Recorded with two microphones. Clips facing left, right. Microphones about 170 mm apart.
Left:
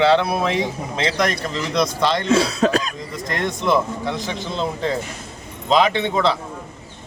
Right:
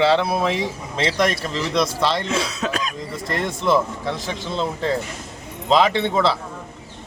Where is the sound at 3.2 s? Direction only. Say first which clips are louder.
Even; 5° right (ahead or behind).